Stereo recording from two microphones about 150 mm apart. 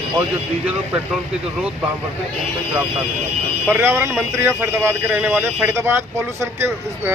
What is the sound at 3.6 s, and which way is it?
Speech, 15° right (ahead or behind).